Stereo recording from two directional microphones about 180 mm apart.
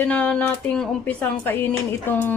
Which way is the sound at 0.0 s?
5° left (ahead or behind).